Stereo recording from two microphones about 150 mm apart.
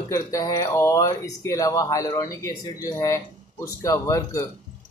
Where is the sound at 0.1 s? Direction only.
20° left (ahead or behind).